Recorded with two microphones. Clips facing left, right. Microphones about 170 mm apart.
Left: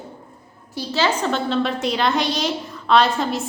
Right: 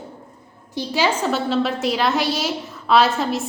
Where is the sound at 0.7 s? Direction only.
15° right (ahead or behind).